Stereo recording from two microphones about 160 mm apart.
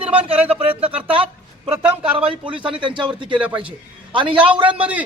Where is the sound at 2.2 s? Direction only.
30° right (ahead or behind).